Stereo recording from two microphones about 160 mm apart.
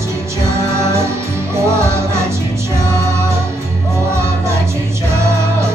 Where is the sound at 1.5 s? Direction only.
15° right (ahead or behind).